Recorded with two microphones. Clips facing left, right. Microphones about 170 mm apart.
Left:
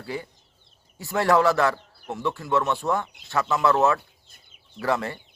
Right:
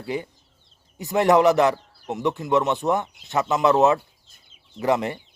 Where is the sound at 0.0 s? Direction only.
20° right (ahead or behind).